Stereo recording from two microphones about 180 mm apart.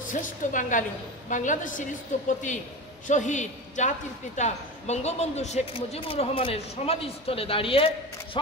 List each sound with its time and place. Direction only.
0.1 s a woman's voice: 45° left (ahead or behind); by 8.4 s 30° left (ahead or behind)